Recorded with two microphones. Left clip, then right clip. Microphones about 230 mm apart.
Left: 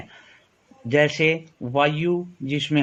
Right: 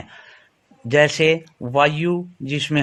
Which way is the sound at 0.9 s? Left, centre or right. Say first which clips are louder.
Right 4 dB; right.